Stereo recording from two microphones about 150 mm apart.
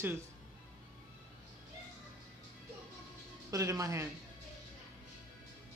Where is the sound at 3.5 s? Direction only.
20° right (ahead or behind).